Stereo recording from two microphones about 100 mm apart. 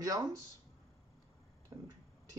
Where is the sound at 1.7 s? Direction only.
35° right (ahead or behind).